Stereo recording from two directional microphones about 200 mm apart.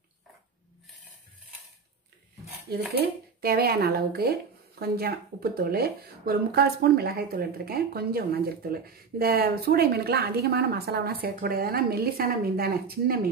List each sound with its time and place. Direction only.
3.0 s speech: 50° right (ahead or behind)